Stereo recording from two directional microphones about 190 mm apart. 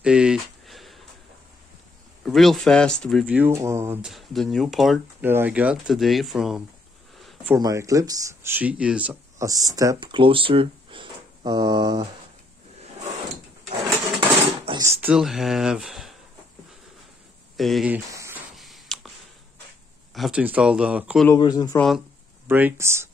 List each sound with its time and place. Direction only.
0.0 s a sound: 5° right (ahead or behind)
2.2 s speech: centre (ahead or behind)
3.3 s speech: 10° right (ahead or behind)
4.0 s speech: centre (ahead or behind)
7.2 s a sound: centre (ahead or behind)
7.5 s speech: 20° right (ahead or behind)
13.8 s a sound: 20° right (ahead or behind); by 16.2 s centre (ahead or behind)
17.6 s speech: centre (ahead or behind)
18.6 s a sound: centre (ahead or behind)
20.2 s speech: 5° right (ahead or behind)
21.3 s speech: 20° left (ahead or behind)
21.7 s speech: centre (ahead or behind)
22.5 s speech: 10° right (ahead or behind)